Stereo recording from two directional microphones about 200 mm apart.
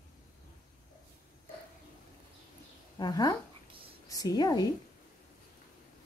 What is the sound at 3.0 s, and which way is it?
A woman's voice, 20° left (ahead or behind).